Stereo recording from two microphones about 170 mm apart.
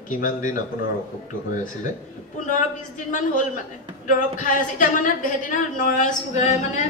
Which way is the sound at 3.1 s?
50° left (ahead or behind).